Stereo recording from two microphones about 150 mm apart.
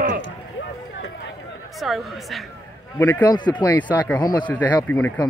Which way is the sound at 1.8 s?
Centre (ahead or behind).